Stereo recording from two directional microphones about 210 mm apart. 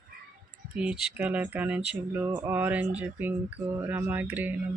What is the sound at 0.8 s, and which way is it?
Speech, 5° right (ahead or behind).